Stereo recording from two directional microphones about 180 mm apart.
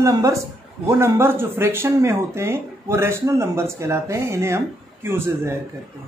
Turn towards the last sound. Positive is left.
turn(degrees=-15)  # may be behind; listen again after turning